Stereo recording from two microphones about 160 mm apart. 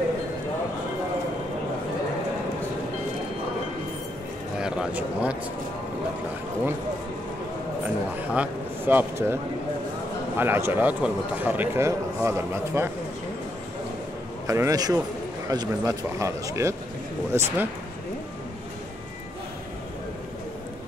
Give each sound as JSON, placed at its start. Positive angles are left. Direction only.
{"t": 4.6, "sound": "speech", "side_deg": -5}
{"t": 8.2, "sound": "a man's voice", "side_deg": -10}
{"t": 14.5, "sound": "a man's voice", "side_deg": -20}